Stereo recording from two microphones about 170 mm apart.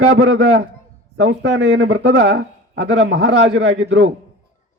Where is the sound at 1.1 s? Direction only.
85° right.